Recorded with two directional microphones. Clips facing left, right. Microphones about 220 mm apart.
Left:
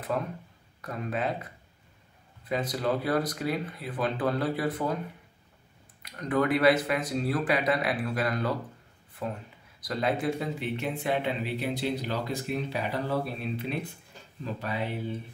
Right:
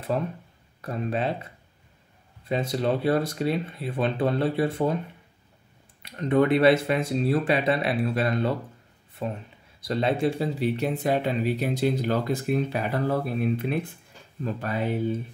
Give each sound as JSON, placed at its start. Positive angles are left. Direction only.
{"t": 0.1, "sound": "speech", "side_deg": -25}
{"t": 6.0, "sound": "speech", "side_deg": -25}